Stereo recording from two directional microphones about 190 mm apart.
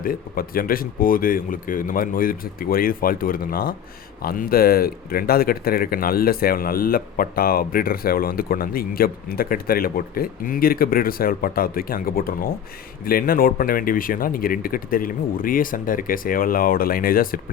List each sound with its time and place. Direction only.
0.0 s speech: 50° left (ahead or behind)